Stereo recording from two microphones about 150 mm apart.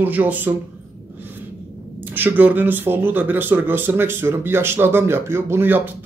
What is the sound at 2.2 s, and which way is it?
Speech, 10° right (ahead or behind).